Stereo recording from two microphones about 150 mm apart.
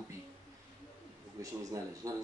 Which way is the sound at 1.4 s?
20° right (ahead or behind).